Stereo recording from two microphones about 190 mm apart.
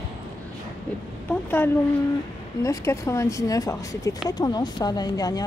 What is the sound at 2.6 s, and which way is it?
Speech, 15° left (ahead or behind).